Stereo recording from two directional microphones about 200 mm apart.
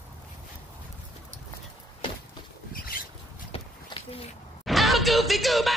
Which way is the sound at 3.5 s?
25° left (ahead or behind).